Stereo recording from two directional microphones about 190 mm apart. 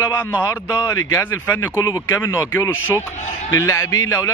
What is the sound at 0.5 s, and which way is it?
Speech, 20° left (ahead or behind).